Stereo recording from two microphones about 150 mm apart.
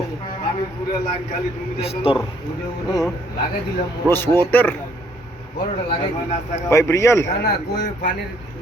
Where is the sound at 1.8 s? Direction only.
40° left (ahead or behind).